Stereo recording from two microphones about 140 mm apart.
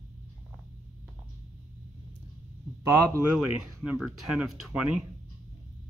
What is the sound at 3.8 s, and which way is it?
Speech, 5° right (ahead or behind).